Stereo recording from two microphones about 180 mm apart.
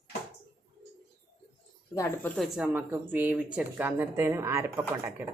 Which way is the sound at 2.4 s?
5° right (ahead or behind).